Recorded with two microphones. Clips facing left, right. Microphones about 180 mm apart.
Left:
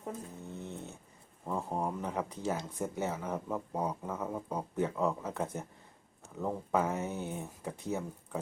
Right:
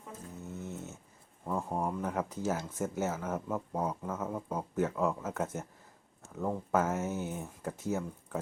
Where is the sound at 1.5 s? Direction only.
Centre (ahead or behind).